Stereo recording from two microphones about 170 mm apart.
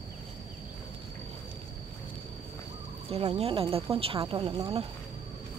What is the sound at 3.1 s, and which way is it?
Speech, 35° right (ahead or behind).